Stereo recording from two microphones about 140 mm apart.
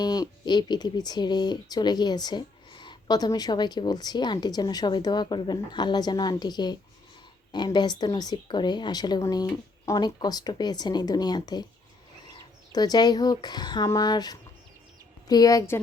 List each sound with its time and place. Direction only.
0.0 s speech: 30° left (ahead or behind)